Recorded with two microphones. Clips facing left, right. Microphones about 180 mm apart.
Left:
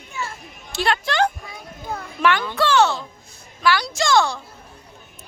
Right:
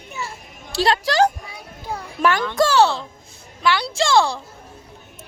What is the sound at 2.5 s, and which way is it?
A woman's voice, 40° right (ahead or behind).